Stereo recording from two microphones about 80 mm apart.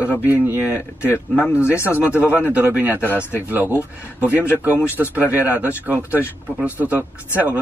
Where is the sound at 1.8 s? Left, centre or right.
Left.